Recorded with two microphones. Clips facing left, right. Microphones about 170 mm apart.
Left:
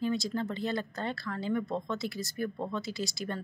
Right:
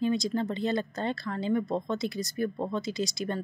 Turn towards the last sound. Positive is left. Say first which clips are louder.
# right 4 dB
turn(degrees=-20)  # may be behind; listen again after turning